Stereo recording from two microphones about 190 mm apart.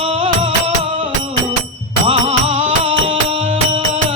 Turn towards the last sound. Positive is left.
turn(degrees=-25)  # may be behind; listen again after turning